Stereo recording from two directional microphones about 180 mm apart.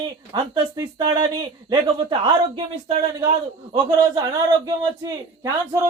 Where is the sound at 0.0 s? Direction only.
25° right (ahead or behind).